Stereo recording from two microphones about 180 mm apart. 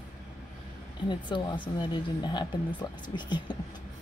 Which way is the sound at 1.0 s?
25° left (ahead or behind).